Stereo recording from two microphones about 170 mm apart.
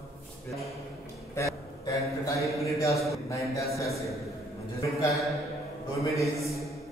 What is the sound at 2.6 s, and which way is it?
A man's voice, 15° left (ahead or behind).